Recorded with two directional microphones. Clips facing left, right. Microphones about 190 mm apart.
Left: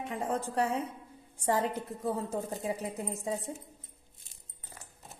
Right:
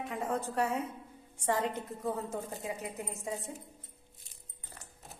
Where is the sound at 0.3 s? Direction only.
35° left (ahead or behind).